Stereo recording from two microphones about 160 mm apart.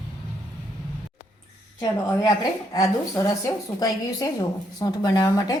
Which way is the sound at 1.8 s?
25° left (ahead or behind).